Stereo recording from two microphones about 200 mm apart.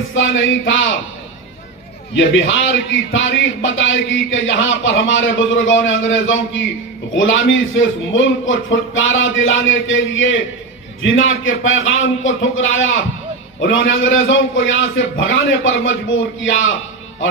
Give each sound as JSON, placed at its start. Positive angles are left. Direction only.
{"t": 0.1, "sound": "a man's voice", "side_deg": 70}
{"t": 2.1, "sound": "a man's voice", "side_deg": 65}